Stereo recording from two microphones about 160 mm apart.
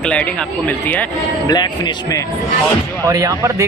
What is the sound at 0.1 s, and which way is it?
Speech, 10° left (ahead or behind).